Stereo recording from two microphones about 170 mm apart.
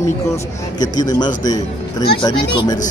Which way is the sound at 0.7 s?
25° left (ahead or behind).